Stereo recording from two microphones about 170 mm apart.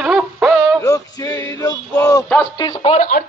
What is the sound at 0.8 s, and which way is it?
Male singing, 20° left (ahead or behind).